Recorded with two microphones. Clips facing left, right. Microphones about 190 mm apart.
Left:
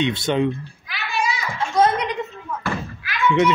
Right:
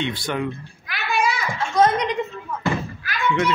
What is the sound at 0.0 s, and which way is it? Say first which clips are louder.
Speech: left 5 dB; 20° left (ahead or behind).